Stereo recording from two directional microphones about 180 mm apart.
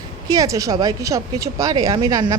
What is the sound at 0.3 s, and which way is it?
A woman's voice, 20° right (ahead or behind).